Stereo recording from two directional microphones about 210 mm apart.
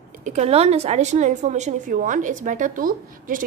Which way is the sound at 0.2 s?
30° right (ahead or behind).